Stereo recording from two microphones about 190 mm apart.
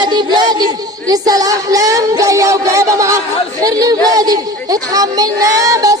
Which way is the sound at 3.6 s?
20° right (ahead or behind).